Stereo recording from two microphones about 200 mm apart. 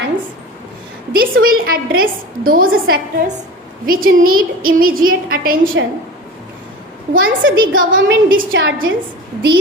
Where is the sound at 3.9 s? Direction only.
45° right (ahead or behind).